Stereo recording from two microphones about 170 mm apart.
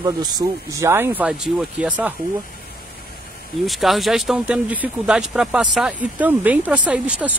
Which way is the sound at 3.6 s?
Centre (ahead or behind).